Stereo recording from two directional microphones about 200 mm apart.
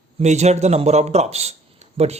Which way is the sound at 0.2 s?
35° right (ahead or behind).